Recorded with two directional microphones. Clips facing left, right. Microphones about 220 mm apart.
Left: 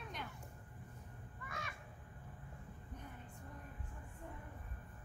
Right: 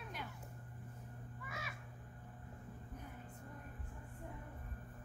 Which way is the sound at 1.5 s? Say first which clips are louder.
Left 1 dB; 5° right (ahead or behind).